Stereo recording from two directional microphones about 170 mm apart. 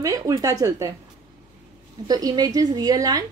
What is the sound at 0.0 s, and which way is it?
Speech, 20° right (ahead or behind).